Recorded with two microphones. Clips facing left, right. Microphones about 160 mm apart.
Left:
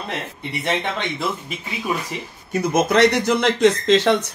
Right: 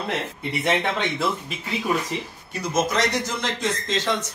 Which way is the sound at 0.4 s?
5° right (ahead or behind).